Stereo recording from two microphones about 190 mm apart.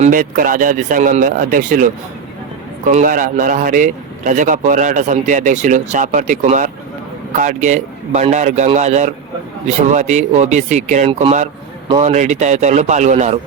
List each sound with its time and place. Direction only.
0.0 s speech: 45° right (ahead or behind)